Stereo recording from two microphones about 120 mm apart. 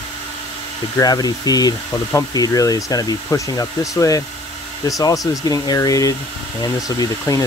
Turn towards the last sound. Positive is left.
turn(degrees=30)  # may be behind; listen again after turning